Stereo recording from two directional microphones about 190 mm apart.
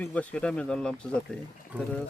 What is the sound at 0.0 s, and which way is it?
Speech, 10° left (ahead or behind).